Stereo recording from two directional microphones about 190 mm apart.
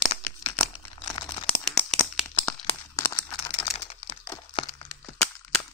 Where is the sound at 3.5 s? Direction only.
30° left (ahead or behind).